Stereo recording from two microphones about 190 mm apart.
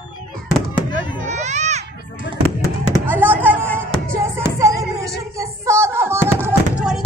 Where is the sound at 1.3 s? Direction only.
35° right (ahead or behind).